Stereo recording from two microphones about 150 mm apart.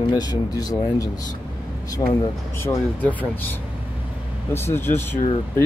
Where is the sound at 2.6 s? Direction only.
10° left (ahead or behind).